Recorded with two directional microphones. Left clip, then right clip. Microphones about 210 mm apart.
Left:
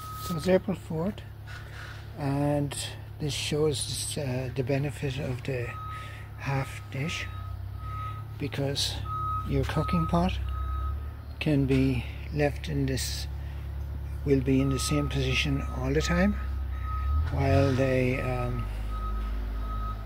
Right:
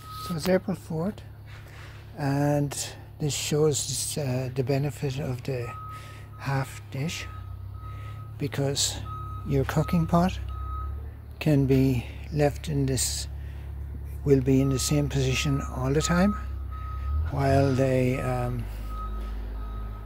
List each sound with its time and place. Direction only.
0.4 s speech: 20° right (ahead or behind)
2.1 s speech: 30° right (ahead or behind)
8.4 s speech: 30° right (ahead or behind)
17.4 s speech: 30° right (ahead or behind)